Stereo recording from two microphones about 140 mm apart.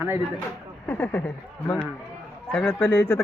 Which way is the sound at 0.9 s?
15° left (ahead or behind).